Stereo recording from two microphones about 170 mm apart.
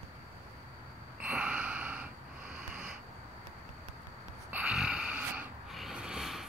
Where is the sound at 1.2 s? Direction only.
10° right (ahead or behind).